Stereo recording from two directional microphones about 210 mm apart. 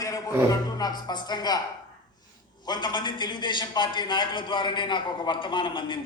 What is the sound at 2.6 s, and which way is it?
A man's voice, 20° left (ahead or behind).